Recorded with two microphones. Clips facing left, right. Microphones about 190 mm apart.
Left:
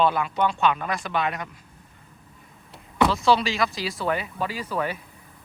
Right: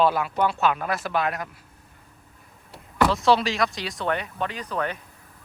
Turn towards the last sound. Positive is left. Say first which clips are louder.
# left 1 dB
turn(degrees=5)  # may be behind; listen again after turning